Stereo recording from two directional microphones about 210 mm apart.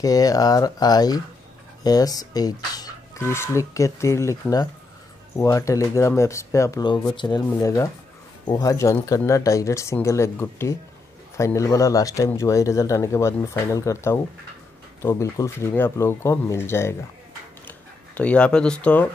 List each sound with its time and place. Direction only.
0.0 s speech: 15° left (ahead or behind)